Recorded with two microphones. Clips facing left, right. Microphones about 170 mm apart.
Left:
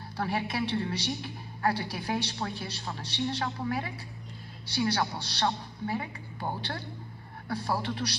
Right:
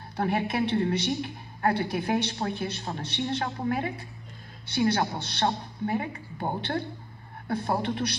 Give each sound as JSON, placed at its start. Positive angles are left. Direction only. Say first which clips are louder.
{"t": 0.2, "sound": "a woman's voice", "louder": "right 4 dB", "side_deg": -55}
{"t": 7.4, "sound": "a woman's voice", "louder": "right 4 dB", "side_deg": -55}